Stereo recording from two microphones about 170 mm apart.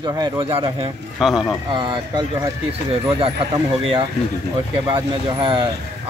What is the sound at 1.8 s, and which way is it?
Speech, 30° right (ahead or behind).